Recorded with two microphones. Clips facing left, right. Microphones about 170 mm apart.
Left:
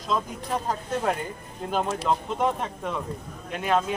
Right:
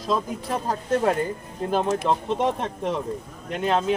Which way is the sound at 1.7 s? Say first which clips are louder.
Right 3 dB; 35° right (ahead or behind).